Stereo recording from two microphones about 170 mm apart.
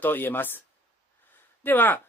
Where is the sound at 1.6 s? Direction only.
10° left (ahead or behind).